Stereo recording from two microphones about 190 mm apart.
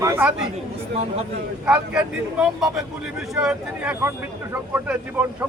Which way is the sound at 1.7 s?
5° right (ahead or behind).